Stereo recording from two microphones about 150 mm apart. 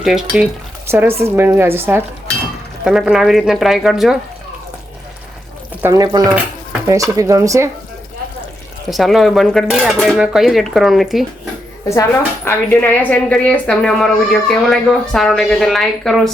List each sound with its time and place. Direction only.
0.0 s a woman's voice: 5° right (ahead or behind)
0.9 s a woman's voice: 15° right (ahead or behind)
2.8 s a woman's voice: 5° right (ahead or behind)
5.8 s speech: 20° right (ahead or behind)
8.9 s a woman's voice: centre (ahead or behind)
12.5 s a woman's voice: 10° left (ahead or behind)